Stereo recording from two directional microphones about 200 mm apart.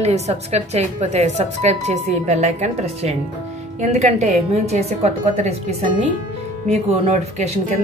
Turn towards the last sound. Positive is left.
turn(degrees=-30)  # may be behind; listen again after turning